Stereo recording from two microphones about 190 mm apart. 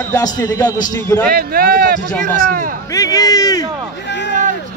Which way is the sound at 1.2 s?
50° right (ahead or behind).